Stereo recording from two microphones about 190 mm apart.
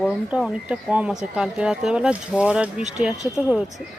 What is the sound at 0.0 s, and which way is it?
Speech, centre (ahead or behind).